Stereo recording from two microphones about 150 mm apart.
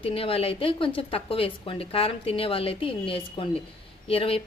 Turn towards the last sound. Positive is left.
turn(degrees=40)  # may be behind; listen again after turning